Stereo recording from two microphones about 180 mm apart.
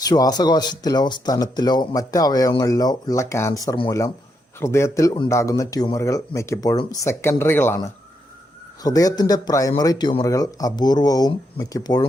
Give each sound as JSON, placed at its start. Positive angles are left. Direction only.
{"t": 0.0, "sound": "speech", "side_deg": 20}
{"t": 8.8, "sound": "speech", "side_deg": 20}